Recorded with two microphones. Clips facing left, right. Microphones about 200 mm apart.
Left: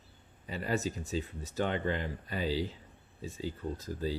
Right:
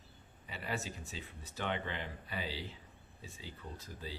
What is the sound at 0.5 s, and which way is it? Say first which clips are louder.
Speech: left 8 dB; 40° left (ahead or behind).